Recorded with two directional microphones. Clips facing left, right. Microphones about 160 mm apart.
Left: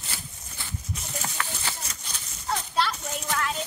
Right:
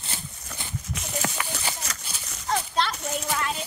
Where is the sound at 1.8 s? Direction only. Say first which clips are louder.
Right 5 dB; 80° right.